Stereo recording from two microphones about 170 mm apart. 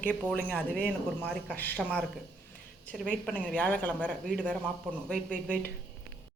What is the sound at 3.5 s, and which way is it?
Speech, 10° left (ahead or behind).